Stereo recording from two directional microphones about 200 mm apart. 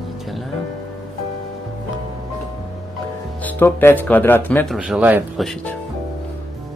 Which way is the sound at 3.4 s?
10° left (ahead or behind).